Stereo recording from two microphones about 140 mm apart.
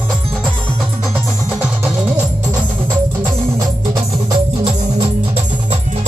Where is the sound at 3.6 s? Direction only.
30° right (ahead or behind).